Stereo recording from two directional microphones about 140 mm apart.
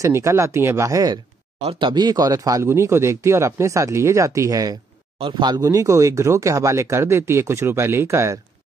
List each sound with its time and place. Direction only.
0.0 s speech: 20° right (ahead or behind)
1.6 s speech: 40° right (ahead or behind); by 8.4 s 20° right (ahead or behind)